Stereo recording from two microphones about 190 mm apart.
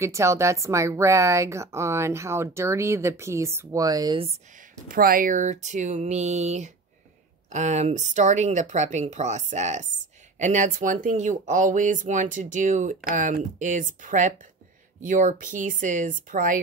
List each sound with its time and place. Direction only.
0.0 s a woman's voice: 15° right (ahead or behind)
4.8 s speech: 50° right (ahead or behind)